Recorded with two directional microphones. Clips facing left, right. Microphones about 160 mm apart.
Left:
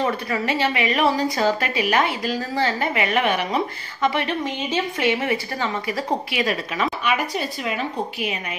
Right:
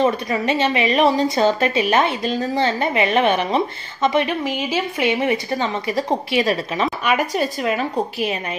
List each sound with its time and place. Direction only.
0.0 s a woman's voice: 20° right (ahead or behind)
7.1 s a woman's voice: 45° right (ahead or behind)